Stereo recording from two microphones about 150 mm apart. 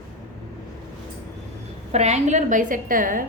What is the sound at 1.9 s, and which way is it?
A woman's voice, 50° right (ahead or behind).